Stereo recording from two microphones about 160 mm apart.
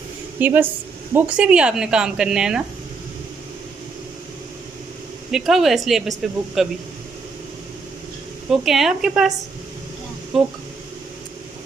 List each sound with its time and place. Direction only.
0.4 s speech: 10° right (ahead or behind)
5.3 s speech: centre (ahead or behind)
8.5 s speech: centre (ahead or behind)